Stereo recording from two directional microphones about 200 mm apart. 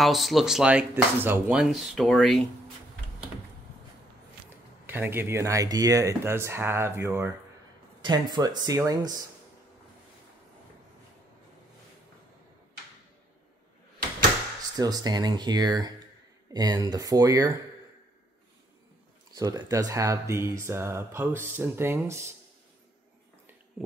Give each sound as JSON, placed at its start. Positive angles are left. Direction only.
{"t": 0.0, "sound": "speech", "side_deg": 0}
{"t": 4.8, "sound": "speech", "side_deg": -10}
{"t": 14.8, "sound": "speech", "side_deg": -20}
{"t": 19.3, "sound": "speech", "side_deg": -20}